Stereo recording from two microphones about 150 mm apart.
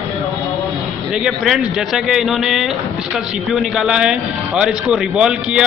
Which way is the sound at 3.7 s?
5° right (ahead or behind).